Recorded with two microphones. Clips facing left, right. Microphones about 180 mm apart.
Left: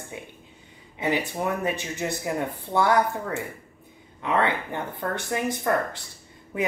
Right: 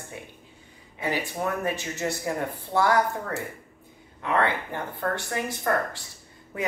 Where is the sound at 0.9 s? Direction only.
20° left (ahead or behind).